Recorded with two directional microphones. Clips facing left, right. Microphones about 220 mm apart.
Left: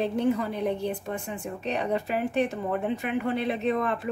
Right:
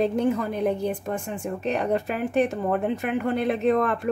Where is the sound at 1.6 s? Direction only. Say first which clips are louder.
Right 3 dB; 50° right (ahead or behind).